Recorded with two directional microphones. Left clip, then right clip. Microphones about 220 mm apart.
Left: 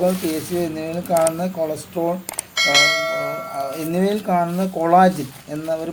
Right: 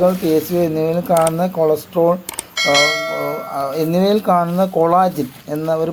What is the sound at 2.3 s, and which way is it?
Bell, centre (ahead or behind).